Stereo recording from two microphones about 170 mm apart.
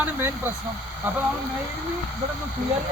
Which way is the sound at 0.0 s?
10° right (ahead or behind).